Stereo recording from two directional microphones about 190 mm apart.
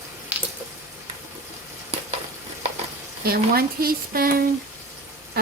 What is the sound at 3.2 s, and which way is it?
Speech, 55° right (ahead or behind).